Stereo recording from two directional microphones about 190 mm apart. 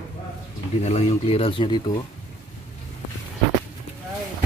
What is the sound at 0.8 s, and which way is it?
Speech, 35° left (ahead or behind).